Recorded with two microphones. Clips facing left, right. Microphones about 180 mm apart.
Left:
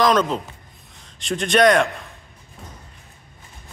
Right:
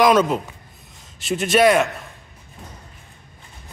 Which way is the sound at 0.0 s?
10° right (ahead or behind).